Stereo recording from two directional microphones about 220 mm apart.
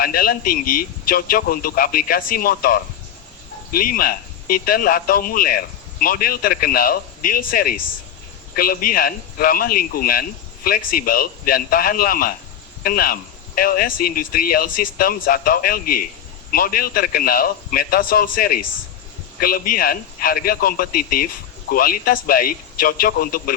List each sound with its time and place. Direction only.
0.0 s speech: 40° left (ahead or behind)